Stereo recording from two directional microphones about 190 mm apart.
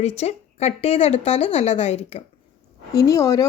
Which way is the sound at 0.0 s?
35° left (ahead or behind).